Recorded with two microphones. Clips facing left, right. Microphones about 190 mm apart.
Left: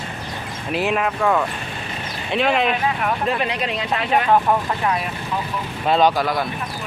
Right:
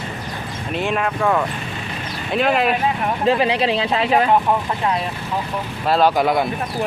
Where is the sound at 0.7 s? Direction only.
Centre (ahead or behind).